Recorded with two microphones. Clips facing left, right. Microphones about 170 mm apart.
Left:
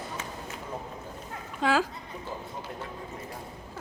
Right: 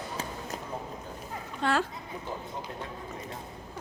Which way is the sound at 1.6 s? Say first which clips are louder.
Left 2 dB; centre (ahead or behind).